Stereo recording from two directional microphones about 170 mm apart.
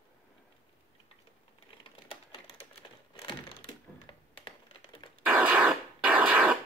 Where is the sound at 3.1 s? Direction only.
30° left (ahead or behind).